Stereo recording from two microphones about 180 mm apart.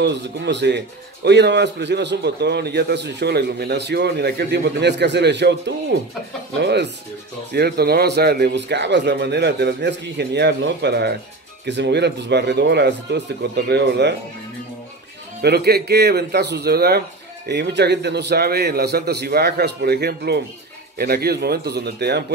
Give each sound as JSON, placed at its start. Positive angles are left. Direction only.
{"t": 0.0, "sound": "speech", "side_deg": -75}
{"t": 15.4, "sound": "a man's voice", "side_deg": -60}